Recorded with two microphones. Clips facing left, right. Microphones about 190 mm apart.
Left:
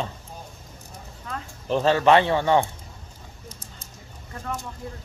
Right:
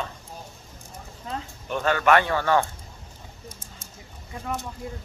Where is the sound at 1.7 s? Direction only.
30° left (ahead or behind).